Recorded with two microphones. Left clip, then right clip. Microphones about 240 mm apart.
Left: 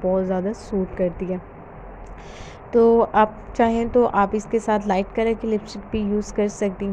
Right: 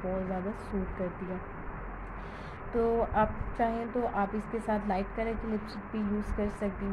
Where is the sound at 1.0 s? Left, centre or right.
Left.